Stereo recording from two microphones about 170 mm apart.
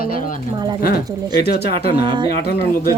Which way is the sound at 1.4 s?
65° left (ahead or behind).